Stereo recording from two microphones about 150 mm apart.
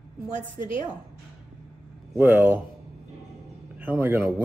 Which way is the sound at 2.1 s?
15° right (ahead or behind).